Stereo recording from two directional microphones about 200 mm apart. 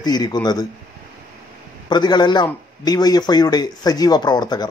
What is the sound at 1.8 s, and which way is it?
Speech, 20° left (ahead or behind).